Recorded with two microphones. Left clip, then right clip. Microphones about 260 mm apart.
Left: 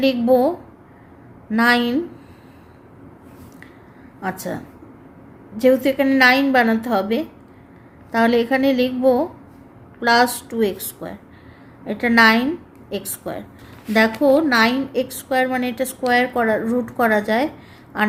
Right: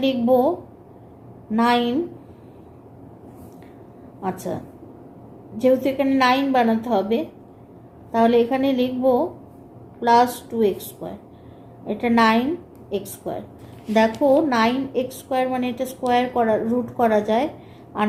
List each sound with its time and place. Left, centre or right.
0.0 s a woman's voice: left
4.2 s a woman's voice: left